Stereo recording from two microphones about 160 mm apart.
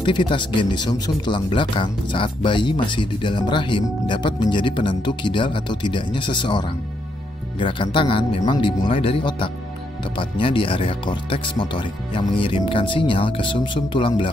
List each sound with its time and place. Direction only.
0.0 s speech: 30° left (ahead or behind)